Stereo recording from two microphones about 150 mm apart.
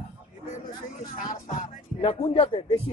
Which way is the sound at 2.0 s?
40° left (ahead or behind).